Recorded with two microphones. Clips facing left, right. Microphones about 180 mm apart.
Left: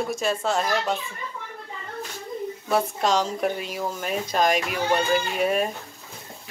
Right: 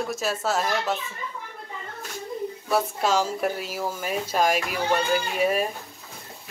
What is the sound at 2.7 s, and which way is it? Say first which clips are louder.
Speech: left 1 dB; 5° right (ahead or behind).